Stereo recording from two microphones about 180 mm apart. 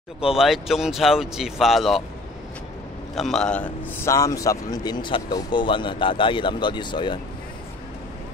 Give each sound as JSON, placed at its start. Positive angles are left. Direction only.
{"t": 0.4, "sound": "speech", "side_deg": 0}
{"t": 3.2, "sound": "a man's voice", "side_deg": 0}